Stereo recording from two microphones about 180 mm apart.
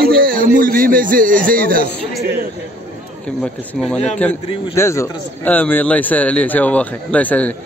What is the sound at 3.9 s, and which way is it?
Speech, 35° left (ahead or behind).